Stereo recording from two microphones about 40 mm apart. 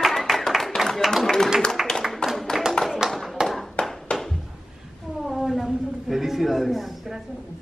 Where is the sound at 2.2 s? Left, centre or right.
Centre.